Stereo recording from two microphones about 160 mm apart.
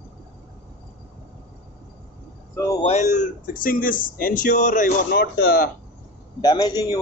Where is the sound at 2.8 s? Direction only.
45° left (ahead or behind).